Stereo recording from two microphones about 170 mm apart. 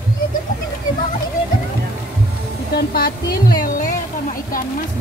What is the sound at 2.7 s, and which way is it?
Speech, 60° left (ahead or behind).